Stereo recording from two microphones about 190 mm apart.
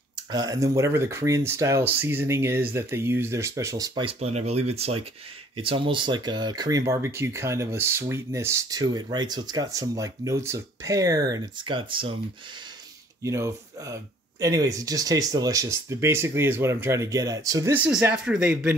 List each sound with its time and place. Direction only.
0.3 s speech: 20° right (ahead or behind)
13.2 s speech: 15° right (ahead or behind)